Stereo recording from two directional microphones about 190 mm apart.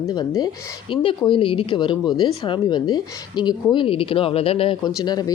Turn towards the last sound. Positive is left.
turn(degrees=20)  # may be behind; listen again after turning